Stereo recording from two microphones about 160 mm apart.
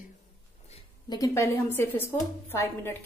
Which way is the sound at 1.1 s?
20° left (ahead or behind).